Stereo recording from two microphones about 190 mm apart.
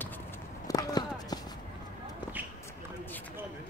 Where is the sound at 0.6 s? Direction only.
20° left (ahead or behind).